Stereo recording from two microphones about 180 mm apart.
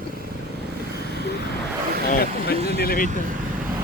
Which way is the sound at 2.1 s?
60° left (ahead or behind).